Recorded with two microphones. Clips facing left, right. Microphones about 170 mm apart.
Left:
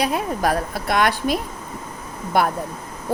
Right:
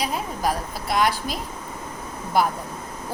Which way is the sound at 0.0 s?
65° left (ahead or behind).